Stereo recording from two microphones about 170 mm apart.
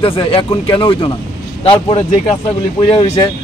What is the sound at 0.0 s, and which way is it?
Speech, 30° left (ahead or behind).